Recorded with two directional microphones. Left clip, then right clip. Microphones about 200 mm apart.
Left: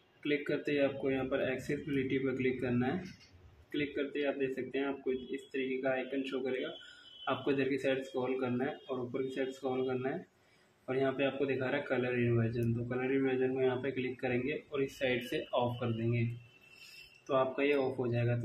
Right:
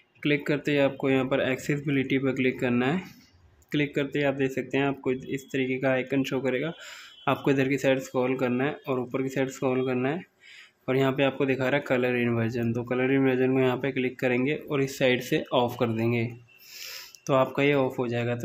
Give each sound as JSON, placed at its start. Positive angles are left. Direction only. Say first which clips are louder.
{"t": 0.5, "sound": "a man's voice", "louder": "right 7 dB", "side_deg": -40}
{"t": 17.3, "sound": "a man's voice", "louder": "right 8 dB", "side_deg": -40}